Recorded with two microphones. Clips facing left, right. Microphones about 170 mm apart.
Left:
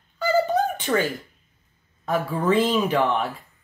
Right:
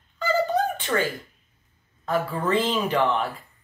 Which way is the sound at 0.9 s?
10° left (ahead or behind).